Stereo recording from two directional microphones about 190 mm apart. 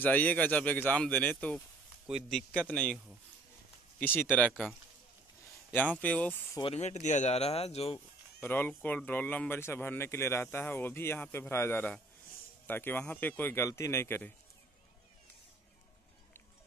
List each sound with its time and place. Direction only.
0.0 s a man's voice: 10° left (ahead or behind)
4.0 s a man's voice: 10° left (ahead or behind)
6.6 s speech: 35° left (ahead or behind)
8.4 s speech: 10° left (ahead or behind)